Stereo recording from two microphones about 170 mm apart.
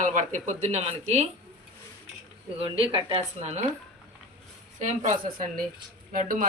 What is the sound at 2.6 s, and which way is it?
Speech, 35° right (ahead or behind).